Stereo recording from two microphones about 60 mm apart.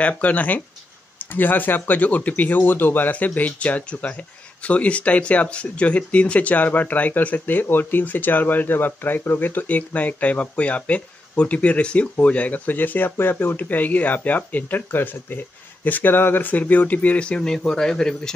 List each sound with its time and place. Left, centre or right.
0.0 s speech: left; by 18.3 s centre